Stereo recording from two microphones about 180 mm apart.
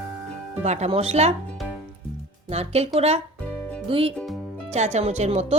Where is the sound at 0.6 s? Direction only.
35° right (ahead or behind).